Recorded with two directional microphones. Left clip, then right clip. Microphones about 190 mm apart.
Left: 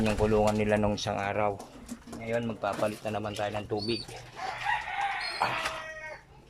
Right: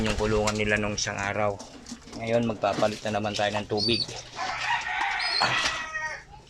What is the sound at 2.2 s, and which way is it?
Speech, 5° right (ahead or behind).